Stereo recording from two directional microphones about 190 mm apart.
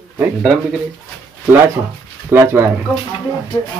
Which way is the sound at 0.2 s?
5° right (ahead or behind).